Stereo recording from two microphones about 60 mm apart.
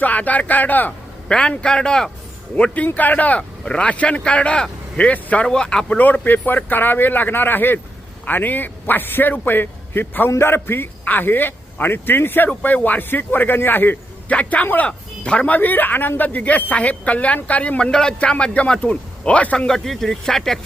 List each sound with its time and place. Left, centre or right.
0.0 s a woman's voice: left
1.3 s a man's voice: centre
2.7 s a woman's voice: left
3.6 s a woman's voice: centre
6.0 s a man's voice: left
14.3 s speech: left
15.5 s a woman's voice: left
19.5 s speech: centre